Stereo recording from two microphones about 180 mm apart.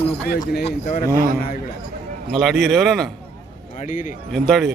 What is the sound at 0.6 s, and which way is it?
Speech, 45° left (ahead or behind).